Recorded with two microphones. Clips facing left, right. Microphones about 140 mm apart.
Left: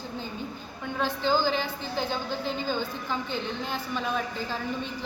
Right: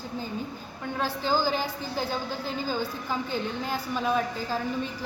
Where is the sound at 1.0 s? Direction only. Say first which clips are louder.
Left 1 dB; 5° right (ahead or behind).